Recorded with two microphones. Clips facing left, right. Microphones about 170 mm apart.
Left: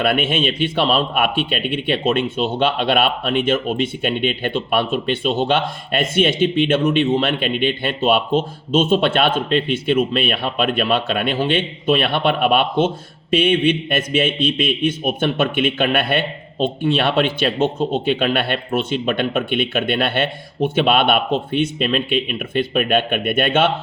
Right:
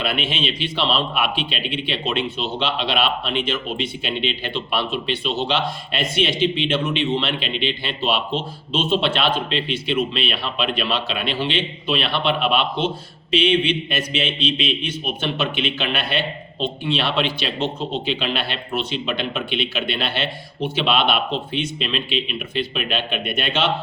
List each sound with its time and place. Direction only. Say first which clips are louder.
0.0 s speech: left 6 dB; 50° left (ahead or behind)